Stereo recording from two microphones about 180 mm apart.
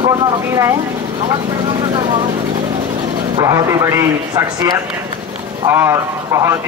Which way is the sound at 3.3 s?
15° right (ahead or behind).